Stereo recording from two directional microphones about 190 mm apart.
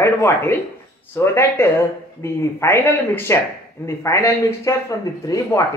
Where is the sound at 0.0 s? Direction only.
10° left (ahead or behind).